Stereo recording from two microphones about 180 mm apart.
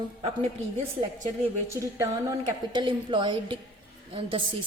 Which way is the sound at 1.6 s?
15° right (ahead or behind).